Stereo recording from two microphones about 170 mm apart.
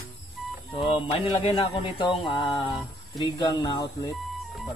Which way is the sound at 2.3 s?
20° left (ahead or behind).